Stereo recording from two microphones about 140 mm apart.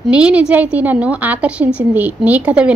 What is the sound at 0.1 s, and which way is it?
A woman's voice, 10° right (ahead or behind).